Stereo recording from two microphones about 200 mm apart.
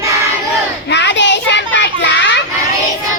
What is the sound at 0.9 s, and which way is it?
Children playing, 60° left (ahead or behind).